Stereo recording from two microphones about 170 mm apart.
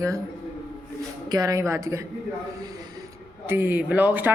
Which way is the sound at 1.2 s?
20° right (ahead or behind).